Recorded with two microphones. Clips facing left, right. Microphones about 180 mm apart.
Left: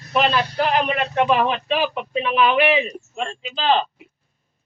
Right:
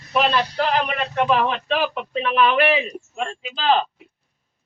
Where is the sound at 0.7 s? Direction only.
20° left (ahead or behind); by 3.9 s centre (ahead or behind).